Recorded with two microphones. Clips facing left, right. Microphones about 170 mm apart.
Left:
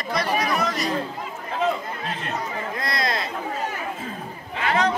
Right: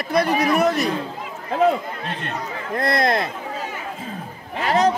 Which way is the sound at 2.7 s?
60° right (ahead or behind).